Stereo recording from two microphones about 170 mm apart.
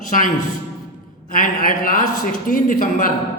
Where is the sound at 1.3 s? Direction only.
50° left (ahead or behind).